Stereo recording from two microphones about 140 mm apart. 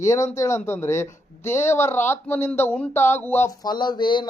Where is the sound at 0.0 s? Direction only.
20° left (ahead or behind).